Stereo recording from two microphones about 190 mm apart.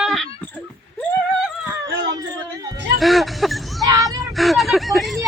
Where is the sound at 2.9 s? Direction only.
Centre (ahead or behind).